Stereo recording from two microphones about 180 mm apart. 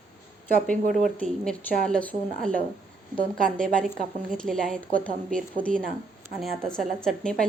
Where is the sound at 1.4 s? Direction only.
5° left (ahead or behind).